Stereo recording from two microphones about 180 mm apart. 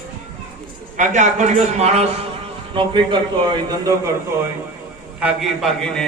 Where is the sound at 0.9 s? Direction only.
45° right (ahead or behind); by 4.1 s 20° right (ahead or behind).